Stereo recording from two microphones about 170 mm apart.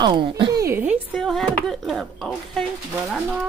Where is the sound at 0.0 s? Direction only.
25° right (ahead or behind).